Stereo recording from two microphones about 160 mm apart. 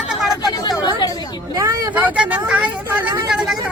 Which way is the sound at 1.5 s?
20° right (ahead or behind).